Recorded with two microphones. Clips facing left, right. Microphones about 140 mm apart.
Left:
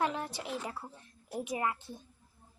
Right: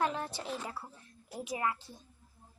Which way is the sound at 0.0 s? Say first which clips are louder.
Even; 20° left (ahead or behind).